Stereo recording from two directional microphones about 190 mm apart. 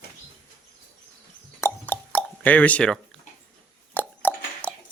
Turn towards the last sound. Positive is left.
turn(degrees=10)  # may be behind; listen again after turning